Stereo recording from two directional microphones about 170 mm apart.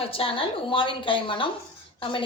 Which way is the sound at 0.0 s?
35° left (ahead or behind).